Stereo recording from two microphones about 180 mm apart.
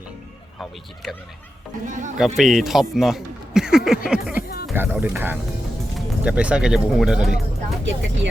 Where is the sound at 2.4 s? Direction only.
Centre (ahead or behind).